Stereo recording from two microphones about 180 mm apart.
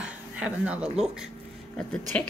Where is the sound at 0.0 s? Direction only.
5° right (ahead or behind).